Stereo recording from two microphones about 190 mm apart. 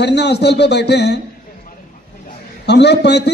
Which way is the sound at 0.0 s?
65° left (ahead or behind).